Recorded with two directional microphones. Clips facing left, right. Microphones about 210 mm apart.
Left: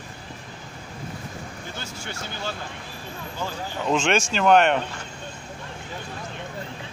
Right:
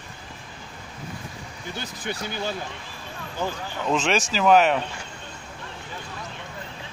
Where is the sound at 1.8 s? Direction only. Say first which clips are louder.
Right 6 dB; 15° right (ahead or behind).